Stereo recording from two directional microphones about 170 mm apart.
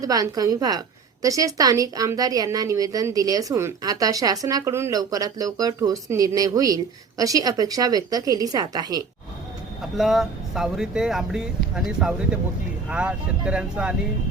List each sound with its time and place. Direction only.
0.0 s a woman's voice: 20° right (ahead or behind)
10.0 s speech: centre (ahead or behind)